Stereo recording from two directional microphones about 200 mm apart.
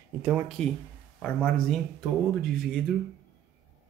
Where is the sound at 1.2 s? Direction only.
5° left (ahead or behind).